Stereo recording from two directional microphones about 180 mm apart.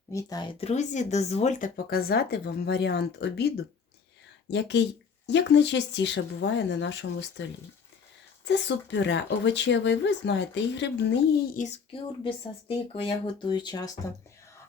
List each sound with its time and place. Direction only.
0.1 s speech: 20° left (ahead or behind)
0.6 s speech: 40° left (ahead or behind); by 3.5 s 65° left (ahead or behind)
4.5 s speech: 75° left (ahead or behind)
8.4 s speech: 75° left (ahead or behind)
11.6 s a child's voice: 45° left (ahead or behind)
12.2 s speech: 30° left (ahead or behind)